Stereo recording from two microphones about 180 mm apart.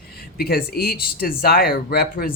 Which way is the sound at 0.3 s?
60° left (ahead or behind).